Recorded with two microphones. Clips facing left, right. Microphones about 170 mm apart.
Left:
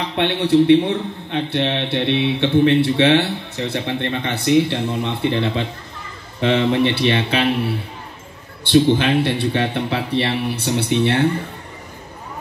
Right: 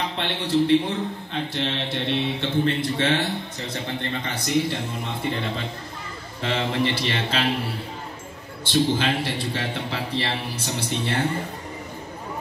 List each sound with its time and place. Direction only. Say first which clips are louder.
0.2 s a man's voice: left 8 dB; 70° left (ahead or behind)